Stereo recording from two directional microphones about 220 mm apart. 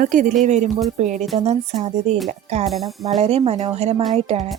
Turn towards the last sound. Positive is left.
turn(degrees=-30)  # may be behind; listen again after turning